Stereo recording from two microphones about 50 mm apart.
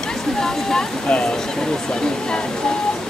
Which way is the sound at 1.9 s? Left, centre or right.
Centre.